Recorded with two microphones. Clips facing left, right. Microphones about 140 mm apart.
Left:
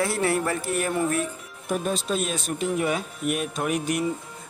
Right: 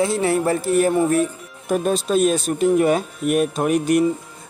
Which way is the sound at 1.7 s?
50° right (ahead or behind).